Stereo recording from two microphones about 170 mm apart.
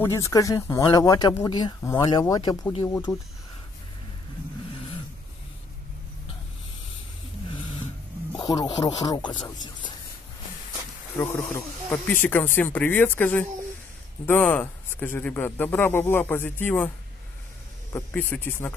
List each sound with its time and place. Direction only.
0.0 s speech: 15° left (ahead or behind)
8.4 s speech: 20° left (ahead or behind)
11.1 s speech: 15° left (ahead or behind)
17.9 s speech: 10° left (ahead or behind)